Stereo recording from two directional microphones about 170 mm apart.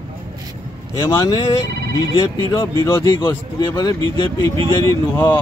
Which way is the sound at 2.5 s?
15° left (ahead or behind).